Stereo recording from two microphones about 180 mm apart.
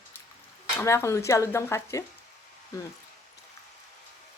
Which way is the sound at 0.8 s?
15° left (ahead or behind).